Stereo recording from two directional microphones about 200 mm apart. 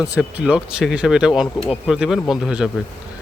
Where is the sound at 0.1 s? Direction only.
5° right (ahead or behind).